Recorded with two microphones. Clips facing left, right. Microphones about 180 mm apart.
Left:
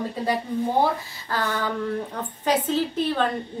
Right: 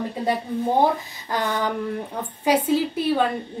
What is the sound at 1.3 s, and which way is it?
A woman's voice, 15° right (ahead or behind).